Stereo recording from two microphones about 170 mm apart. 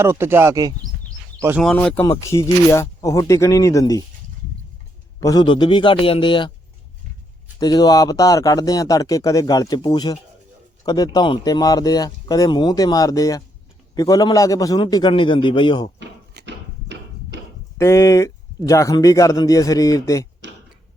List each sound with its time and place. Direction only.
0.0 s speech: 15° right (ahead or behind)
1.6 s speech: 5° left (ahead or behind)
2.2 s speech: 15° left (ahead or behind)
5.2 s a man's voice: 25° left (ahead or behind)
7.6 s a man's voice: 25° left (ahead or behind)
16.0 s a sound: 85° right
17.7 s a man's voice: 15° left (ahead or behind)
20.4 s tick-tock: 90° right